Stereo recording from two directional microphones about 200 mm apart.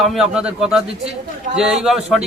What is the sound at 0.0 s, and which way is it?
A man's voice, centre (ahead or behind).